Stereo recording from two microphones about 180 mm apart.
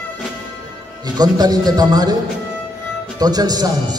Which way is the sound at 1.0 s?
20° right (ahead or behind).